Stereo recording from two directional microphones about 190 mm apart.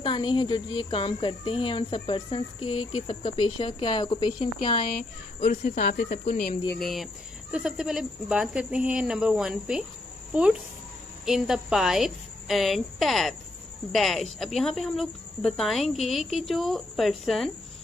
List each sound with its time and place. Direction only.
0.0 s speech: 25° left (ahead or behind)
5.6 s speech: 45° left (ahead or behind)
6.8 s speech: centre (ahead or behind)